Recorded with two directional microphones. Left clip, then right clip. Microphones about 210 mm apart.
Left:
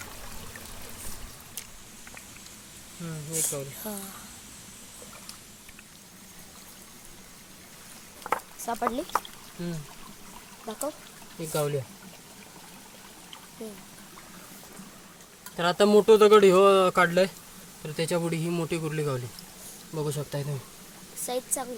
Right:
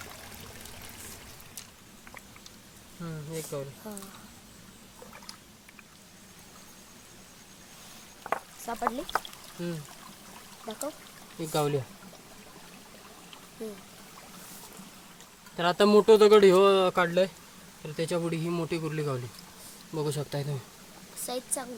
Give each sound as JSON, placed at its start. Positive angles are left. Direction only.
{"t": 3.3, "sound": "speech", "side_deg": 5}
{"t": 8.2, "sound": "a sound", "side_deg": 0}
{"t": 8.6, "sound": "speech", "side_deg": 10}
{"t": 10.7, "sound": "speech", "side_deg": 0}
{"t": 11.5, "sound": "speech", "side_deg": -30}
{"t": 15.5, "sound": "speech", "side_deg": -10}
{"t": 20.0, "sound": "speech", "side_deg": -20}
{"t": 21.2, "sound": "speech", "side_deg": -5}